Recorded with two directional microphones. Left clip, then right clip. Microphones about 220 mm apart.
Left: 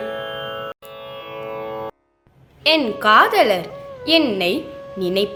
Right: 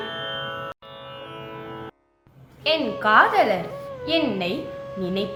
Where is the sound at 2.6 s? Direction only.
50° left (ahead or behind).